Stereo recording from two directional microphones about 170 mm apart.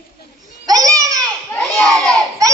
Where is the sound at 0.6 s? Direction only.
20° right (ahead or behind).